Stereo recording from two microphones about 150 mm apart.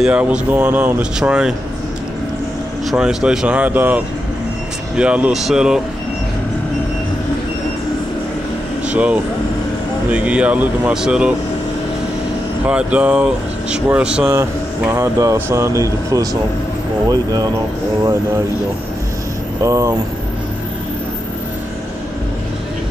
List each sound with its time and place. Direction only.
0.0 s speech: 5° right (ahead or behind)
2.9 s speech: 5° right (ahead or behind)
8.8 s speech: 10° right (ahead or behind)
12.6 s speech: 10° right (ahead or behind); by 17.5 s 25° right (ahead or behind)
19.6 s speech: 20° right (ahead or behind)